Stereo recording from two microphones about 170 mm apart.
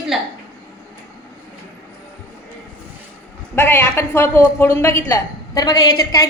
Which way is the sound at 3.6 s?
15° left (ahead or behind).